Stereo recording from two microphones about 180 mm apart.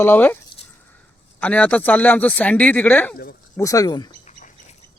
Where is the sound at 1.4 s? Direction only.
10° left (ahead or behind).